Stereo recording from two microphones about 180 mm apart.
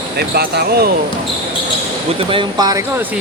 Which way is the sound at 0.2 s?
60° right (ahead or behind).